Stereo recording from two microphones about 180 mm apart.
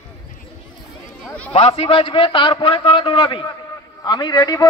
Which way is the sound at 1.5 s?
35° left (ahead or behind).